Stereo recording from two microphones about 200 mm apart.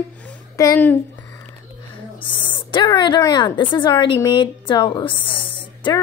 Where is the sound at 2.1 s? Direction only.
25° left (ahead or behind).